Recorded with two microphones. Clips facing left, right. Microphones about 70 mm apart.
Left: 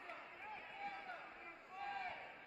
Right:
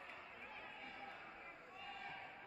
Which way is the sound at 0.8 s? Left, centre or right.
Left.